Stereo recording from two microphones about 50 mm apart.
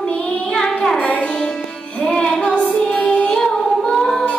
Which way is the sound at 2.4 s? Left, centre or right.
Left.